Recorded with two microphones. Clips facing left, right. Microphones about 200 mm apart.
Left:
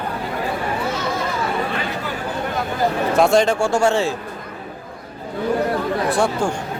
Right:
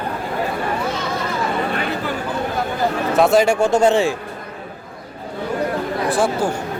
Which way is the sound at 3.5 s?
20° right (ahead or behind).